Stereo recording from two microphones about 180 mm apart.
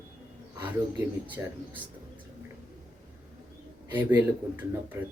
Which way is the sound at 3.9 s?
10° right (ahead or behind).